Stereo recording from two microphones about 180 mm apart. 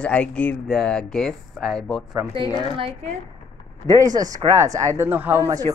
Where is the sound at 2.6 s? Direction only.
30° right (ahead or behind).